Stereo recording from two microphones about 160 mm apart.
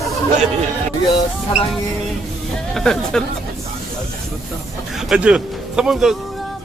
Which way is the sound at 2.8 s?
5° left (ahead or behind).